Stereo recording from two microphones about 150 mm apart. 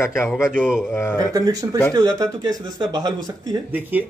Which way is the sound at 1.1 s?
25° right (ahead or behind).